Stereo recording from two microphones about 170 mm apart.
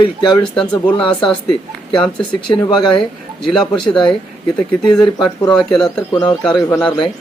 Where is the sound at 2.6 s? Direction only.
30° left (ahead or behind).